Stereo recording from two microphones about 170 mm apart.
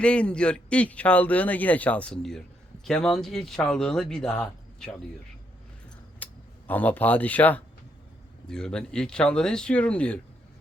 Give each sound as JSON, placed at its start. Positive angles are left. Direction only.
{"t": 0.0, "sound": "a man's voice", "side_deg": 5}
{"t": 6.2, "sound": "a sound", "side_deg": 10}
{"t": 6.7, "sound": "a man's voice", "side_deg": 10}